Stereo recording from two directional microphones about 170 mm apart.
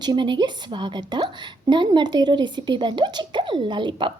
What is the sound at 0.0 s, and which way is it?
A woman's voice, 25° right (ahead or behind).